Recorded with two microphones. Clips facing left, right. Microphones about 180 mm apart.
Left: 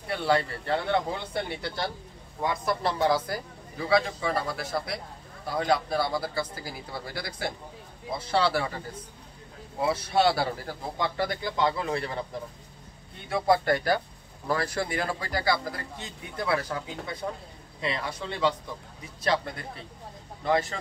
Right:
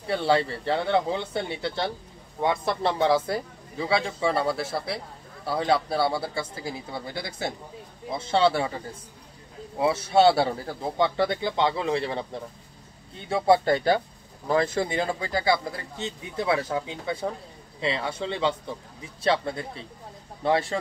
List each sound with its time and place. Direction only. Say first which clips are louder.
0.1 s a man's voice: right 3 dB; 30° right (ahead or behind)
9.8 s a man's voice: right 4 dB; 25° right (ahead or behind)
13.3 s a man's voice: right 3 dB; 25° right (ahead or behind)